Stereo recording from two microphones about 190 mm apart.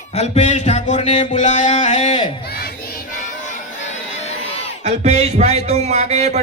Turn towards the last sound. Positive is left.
turn(degrees=-35)  # may be behind; listen again after turning